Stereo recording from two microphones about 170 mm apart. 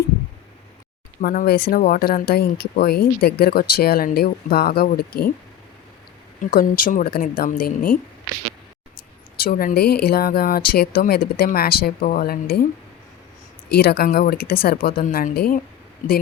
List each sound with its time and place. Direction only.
1.2 s speech: 60° left (ahead or behind)
6.6 s speech: 55° left (ahead or behind)
9.4 s speech: 60° left (ahead or behind)
13.7 s a man's voice: 65° left (ahead or behind); by 16.2 s 50° left (ahead or behind)